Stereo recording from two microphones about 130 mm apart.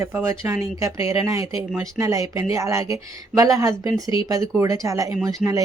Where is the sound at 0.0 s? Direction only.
20° right (ahead or behind).